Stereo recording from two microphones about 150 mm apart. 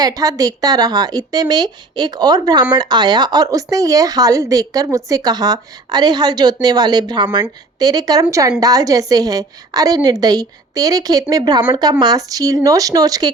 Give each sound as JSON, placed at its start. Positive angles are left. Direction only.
{"t": 0.0, "sound": "speech", "side_deg": -25}